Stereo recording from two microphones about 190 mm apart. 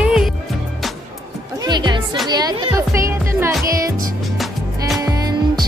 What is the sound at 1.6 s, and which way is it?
Speech, 20° right (ahead or behind).